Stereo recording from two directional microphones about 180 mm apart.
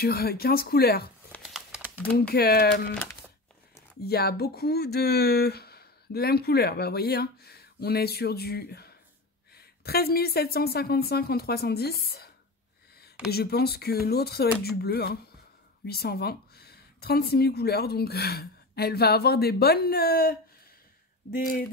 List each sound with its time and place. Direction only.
0.0 s speech: 60° left (ahead or behind)
1.4 s typing: 5° right (ahead or behind)
2.1 s speech: 60° left (ahead or behind)
2.9 s speech: 10° left (ahead or behind)
4.0 s speech: 60° left (ahead or behind)
13.3 s speech: 60° left (ahead or behind)